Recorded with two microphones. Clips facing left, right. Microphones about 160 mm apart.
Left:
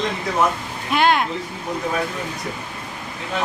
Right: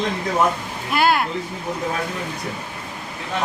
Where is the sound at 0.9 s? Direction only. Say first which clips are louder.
Left 1 dB; 5° right (ahead or behind).